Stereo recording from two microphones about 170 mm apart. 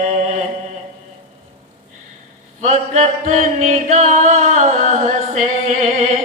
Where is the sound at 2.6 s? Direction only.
45° right (ahead or behind).